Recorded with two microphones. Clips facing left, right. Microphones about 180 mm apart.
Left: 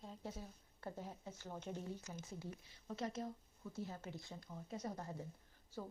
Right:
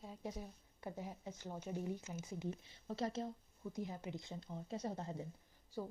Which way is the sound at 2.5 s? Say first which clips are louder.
Right 4 dB; 30° right (ahead or behind).